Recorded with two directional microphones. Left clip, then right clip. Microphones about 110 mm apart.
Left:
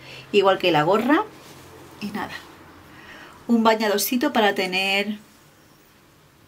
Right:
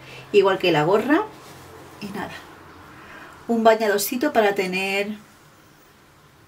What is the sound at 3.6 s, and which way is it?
A woman's voice, 15° left (ahead or behind).